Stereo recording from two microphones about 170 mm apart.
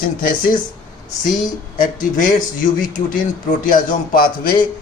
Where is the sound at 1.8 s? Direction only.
50° left (ahead or behind).